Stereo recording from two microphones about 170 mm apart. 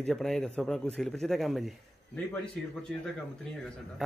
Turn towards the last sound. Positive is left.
turn(degrees=5)  # may be behind; listen again after turning